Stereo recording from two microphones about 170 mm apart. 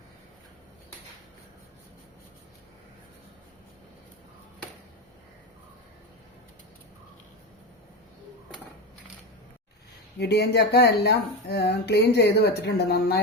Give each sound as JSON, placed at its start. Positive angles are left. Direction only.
{"t": 10.2, "sound": "speech", "side_deg": 75}